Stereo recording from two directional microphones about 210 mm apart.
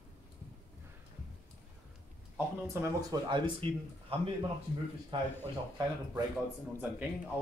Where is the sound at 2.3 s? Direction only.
10° right (ahead or behind).